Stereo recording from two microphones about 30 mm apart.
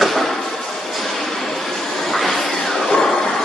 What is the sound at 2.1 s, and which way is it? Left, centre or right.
Vacuum cleaner, centre.